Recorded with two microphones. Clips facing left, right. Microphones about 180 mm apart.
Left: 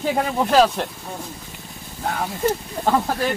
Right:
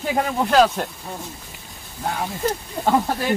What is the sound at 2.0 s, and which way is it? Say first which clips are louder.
Speech: even; 5° right (ahead or behind).